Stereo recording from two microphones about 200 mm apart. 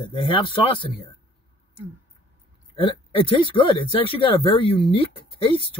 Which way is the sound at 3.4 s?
25° left (ahead or behind).